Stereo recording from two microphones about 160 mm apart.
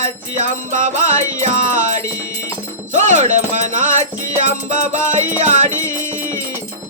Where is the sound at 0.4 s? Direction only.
50° right (ahead or behind).